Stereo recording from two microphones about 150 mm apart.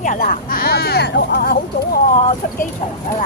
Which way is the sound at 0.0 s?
65° left (ahead or behind).